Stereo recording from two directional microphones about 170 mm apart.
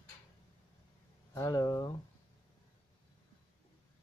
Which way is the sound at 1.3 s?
20° left (ahead or behind).